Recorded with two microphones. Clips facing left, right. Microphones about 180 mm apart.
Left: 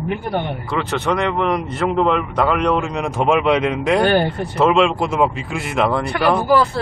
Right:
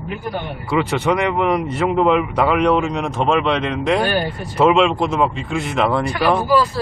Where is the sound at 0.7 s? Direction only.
5° right (ahead or behind).